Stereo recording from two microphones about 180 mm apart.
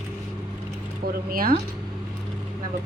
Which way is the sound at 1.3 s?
55° right (ahead or behind).